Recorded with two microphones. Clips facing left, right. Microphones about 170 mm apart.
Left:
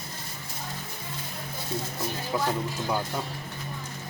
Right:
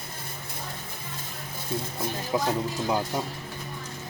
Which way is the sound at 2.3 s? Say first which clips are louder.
Right 2 dB; 15° right (ahead or behind).